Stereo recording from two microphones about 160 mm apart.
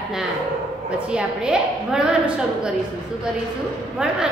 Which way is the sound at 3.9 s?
5° right (ahead or behind).